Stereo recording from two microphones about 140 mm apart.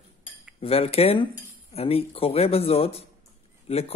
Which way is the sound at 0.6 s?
45° left (ahead or behind).